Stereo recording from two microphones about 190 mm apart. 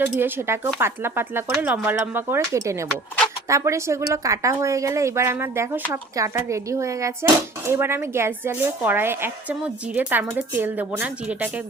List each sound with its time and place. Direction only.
0.0 s a woman's voice: 10° right (ahead or behind)